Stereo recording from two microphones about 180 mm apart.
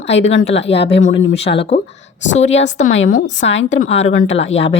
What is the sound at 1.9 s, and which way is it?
Speech, 90° left.